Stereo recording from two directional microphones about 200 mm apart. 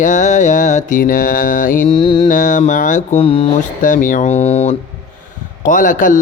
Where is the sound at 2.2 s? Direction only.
40° left (ahead or behind).